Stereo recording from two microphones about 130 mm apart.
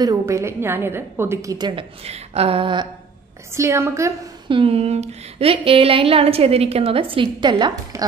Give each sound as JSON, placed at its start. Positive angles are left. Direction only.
{"t": 0.0, "sound": "a woman's voice", "side_deg": -25}
{"t": 1.8, "sound": "a woman's voice", "side_deg": -50}
{"t": 3.5, "sound": "a woman's voice", "side_deg": -20}
{"t": 4.5, "sound": "a woman's voice", "side_deg": -45}